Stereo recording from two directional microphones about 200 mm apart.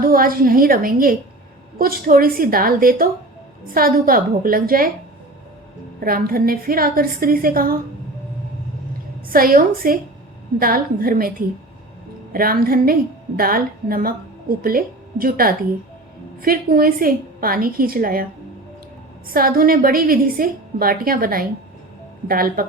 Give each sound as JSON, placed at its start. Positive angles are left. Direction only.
{"t": 0.0, "sound": "a woman's voice", "side_deg": -45}
{"t": 6.0, "sound": "a woman's voice", "side_deg": -45}
{"t": 9.3, "sound": "a woman's voice", "side_deg": -45}
{"t": 19.3, "sound": "a woman's voice", "side_deg": -45}